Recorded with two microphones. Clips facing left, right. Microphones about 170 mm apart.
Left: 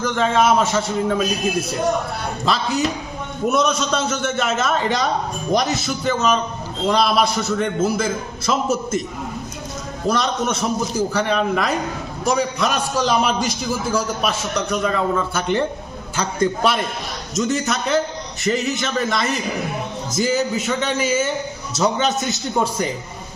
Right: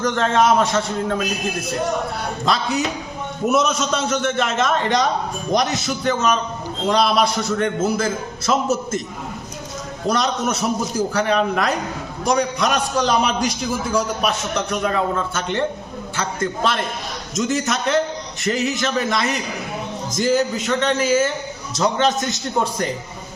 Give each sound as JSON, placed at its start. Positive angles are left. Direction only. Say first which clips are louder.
{"t": 0.0, "sound": "a man's voice", "louder": "even", "side_deg": 5}
{"t": 2.5, "sound": "a man's voice", "louder": "left 1 dB", "side_deg": 0}
{"t": 10.1, "sound": "a man's voice", "louder": "even", "side_deg": 0}
{"t": 15.4, "sound": "a man's voice", "louder": "left 2 dB", "side_deg": 10}
{"t": 17.3, "sound": "a man's voice", "louder": "even", "side_deg": 0}